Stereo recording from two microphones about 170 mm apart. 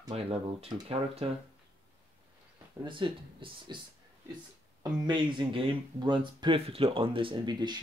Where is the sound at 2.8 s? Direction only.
30° right (ahead or behind).